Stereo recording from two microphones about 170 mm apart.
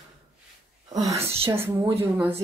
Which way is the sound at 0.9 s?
20° right (ahead or behind).